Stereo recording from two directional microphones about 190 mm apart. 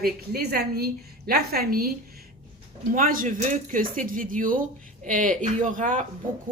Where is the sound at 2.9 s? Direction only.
45° right (ahead or behind).